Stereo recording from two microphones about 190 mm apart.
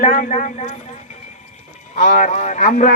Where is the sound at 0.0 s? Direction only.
40° left (ahead or behind).